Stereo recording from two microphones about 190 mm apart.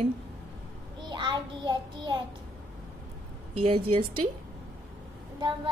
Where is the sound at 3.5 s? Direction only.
30° right (ahead or behind).